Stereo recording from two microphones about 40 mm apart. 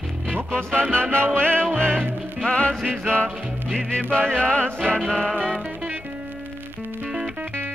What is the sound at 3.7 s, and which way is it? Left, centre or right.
Music, left.